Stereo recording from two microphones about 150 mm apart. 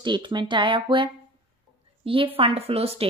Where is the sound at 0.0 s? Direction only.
30° right (ahead or behind).